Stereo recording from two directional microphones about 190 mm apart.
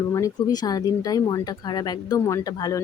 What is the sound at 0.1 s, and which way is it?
Speech, 20° left (ahead or behind).